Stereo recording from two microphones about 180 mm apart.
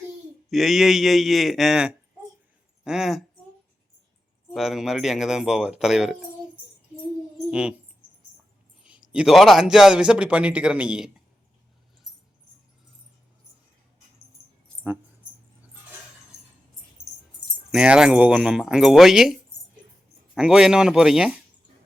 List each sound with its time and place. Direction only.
0.5 s a man's voice: centre (ahead or behind)
4.5 s a man's voice: centre (ahead or behind)
7.5 s a man's voice: 5° right (ahead or behind)
8.8 s a man's voice: 5° right (ahead or behind)
17.0 s keys jangling: 20° right (ahead or behind)
17.7 s a man's voice: 5° right (ahead or behind)
20.3 s a man's voice: 5° right (ahead or behind)